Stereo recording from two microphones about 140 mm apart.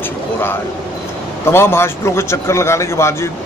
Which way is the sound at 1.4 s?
20° left (ahead or behind).